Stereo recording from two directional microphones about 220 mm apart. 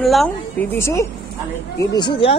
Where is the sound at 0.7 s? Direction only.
10° left (ahead or behind).